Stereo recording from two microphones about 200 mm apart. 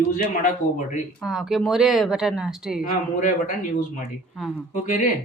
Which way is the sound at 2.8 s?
40° left (ahead or behind).